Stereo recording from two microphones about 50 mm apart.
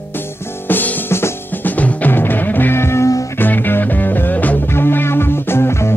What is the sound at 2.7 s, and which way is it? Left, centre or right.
Music, left.